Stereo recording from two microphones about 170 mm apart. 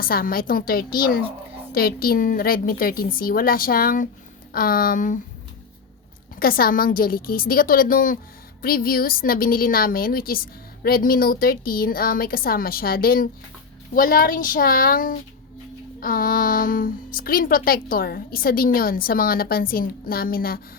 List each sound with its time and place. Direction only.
0.0 s a woman's voice: 60° left (ahead or behind)
6.3 s a woman's voice: 60° left (ahead or behind)